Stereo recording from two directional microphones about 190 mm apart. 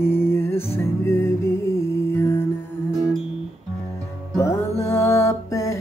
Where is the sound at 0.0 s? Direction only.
10° left (ahead or behind).